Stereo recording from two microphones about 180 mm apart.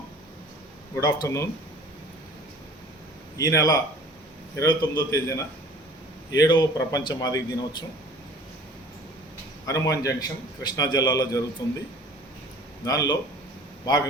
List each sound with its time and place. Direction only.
0.9 s a man's voice: 20° left (ahead or behind)
3.3 s a man's voice: 20° left (ahead or behind)
9.6 s a man's voice: 20° left (ahead or behind)
12.8 s a man's voice: 20° left (ahead or behind)